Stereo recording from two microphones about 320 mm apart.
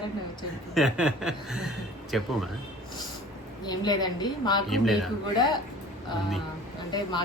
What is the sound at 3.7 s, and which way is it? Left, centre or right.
Speech, centre.